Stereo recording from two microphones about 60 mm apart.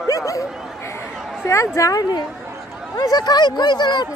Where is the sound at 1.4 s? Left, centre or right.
Left.